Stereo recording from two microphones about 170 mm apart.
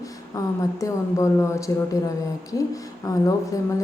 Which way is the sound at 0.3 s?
20° left (ahead or behind).